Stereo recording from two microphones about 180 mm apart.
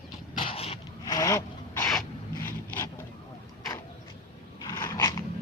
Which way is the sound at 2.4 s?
15° left (ahead or behind).